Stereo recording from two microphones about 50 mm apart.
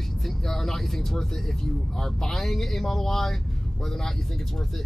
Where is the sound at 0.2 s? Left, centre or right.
Centre.